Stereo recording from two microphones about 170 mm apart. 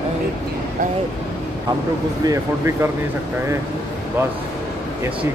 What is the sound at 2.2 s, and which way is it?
Speech, 15° right (ahead or behind).